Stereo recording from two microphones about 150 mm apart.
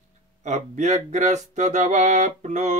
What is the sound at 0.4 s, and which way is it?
Mantra, 50° right (ahead or behind).